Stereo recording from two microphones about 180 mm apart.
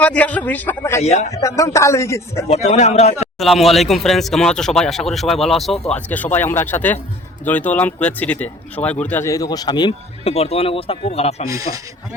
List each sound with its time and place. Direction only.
0.0 s speech: 10° left (ahead or behind)
1.0 s speech: 35° left (ahead or behind)
1.3 s speech: 20° left (ahead or behind)
2.5 s speech: 40° left (ahead or behind)
3.3 s speech: centre (ahead or behind); by 11.4 s 35° left (ahead or behind)
11.4 s speech: 20° right (ahead or behind)